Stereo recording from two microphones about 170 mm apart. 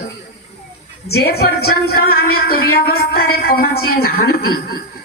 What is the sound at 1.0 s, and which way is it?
A woman's voice, 70° left (ahead or behind).